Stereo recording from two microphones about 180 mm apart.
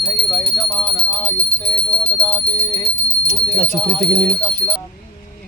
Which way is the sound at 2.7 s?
5° left (ahead or behind).